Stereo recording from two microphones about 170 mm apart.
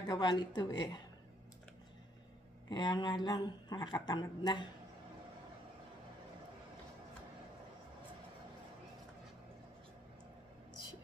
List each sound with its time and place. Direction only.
0.0 s a woman's voice: 25° left (ahead or behind)
2.7 s a woman's voice: 25° left (ahead or behind)